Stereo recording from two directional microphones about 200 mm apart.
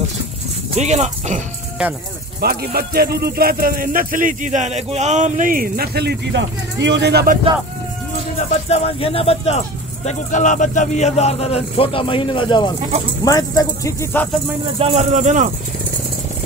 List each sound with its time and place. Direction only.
0.7 s speech: 35° right (ahead or behind)
2.4 s speech: 50° right (ahead or behind)
8.4 s a man's voice: 30° left (ahead or behind); by 14.2 s 15° left (ahead or behind)
14.8 s speech: 30° right (ahead or behind)